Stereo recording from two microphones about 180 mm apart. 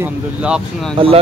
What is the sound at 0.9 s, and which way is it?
Speech, 30° right (ahead or behind).